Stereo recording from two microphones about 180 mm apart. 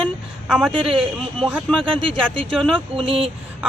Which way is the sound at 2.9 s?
30° right (ahead or behind).